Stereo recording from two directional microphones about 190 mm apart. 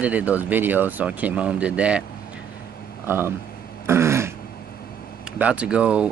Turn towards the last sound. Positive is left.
turn(degrees=-5)  # may be behind; listen again after turning